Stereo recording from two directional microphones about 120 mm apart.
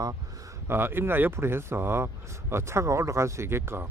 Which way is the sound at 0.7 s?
20° right (ahead or behind).